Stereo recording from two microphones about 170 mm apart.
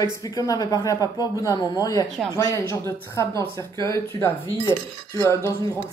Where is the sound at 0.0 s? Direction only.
20° left (ahead or behind).